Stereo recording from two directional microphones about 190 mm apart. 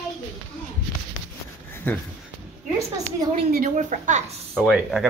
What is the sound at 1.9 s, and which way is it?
Speech, 10° left (ahead or behind).